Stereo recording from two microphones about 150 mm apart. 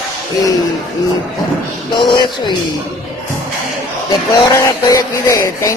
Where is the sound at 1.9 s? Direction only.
30° left (ahead or behind).